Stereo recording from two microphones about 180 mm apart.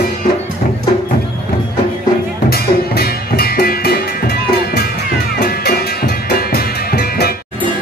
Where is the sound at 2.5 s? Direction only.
60° left (ahead or behind).